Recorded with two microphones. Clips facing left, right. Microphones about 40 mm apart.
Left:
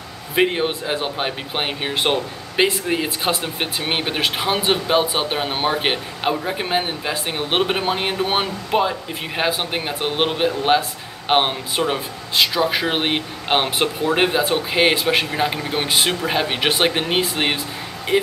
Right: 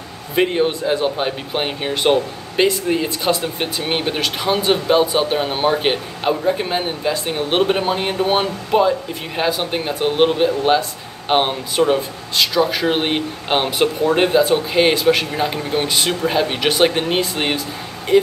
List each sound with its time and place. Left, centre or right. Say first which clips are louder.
0.4 s speech: right 2 dB; centre